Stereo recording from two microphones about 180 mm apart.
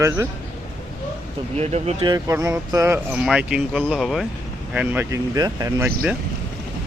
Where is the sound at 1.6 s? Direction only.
35° right (ahead or behind).